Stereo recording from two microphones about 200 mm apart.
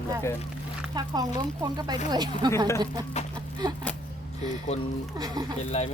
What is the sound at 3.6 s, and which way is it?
Speech, 20° right (ahead or behind).